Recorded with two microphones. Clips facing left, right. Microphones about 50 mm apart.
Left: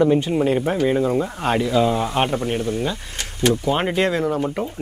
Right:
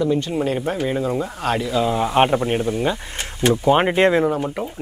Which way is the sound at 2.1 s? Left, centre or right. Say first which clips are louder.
Right 4 dB; right.